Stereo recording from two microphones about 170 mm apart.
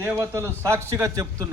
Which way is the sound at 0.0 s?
15° right (ahead or behind).